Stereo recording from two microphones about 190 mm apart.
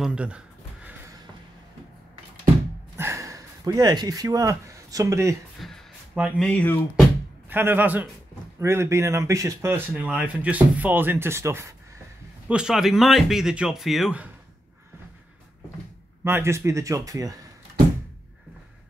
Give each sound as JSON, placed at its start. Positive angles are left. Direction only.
{"t": 0.0, "sound": "speech", "side_deg": -5}
{"t": 3.0, "sound": "a sound", "side_deg": -15}
{"t": 5.6, "sound": "speech", "side_deg": 0}
{"t": 6.5, "sound": "speech", "side_deg": 10}
{"t": 7.4, "sound": "speech", "side_deg": -10}
{"t": 12.4, "sound": "speech", "side_deg": -5}
{"t": 16.3, "sound": "speech", "side_deg": -15}